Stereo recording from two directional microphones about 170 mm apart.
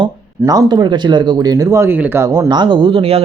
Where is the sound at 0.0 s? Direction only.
25° right (ahead or behind).